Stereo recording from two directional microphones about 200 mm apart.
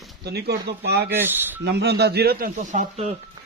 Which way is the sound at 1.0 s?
10° right (ahead or behind).